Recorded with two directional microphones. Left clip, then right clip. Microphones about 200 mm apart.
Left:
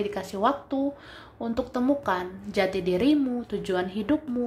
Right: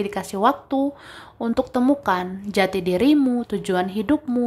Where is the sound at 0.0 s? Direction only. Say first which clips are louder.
Right 5 dB; 20° right (ahead or behind).